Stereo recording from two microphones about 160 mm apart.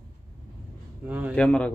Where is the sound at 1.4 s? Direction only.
10° left (ahead or behind).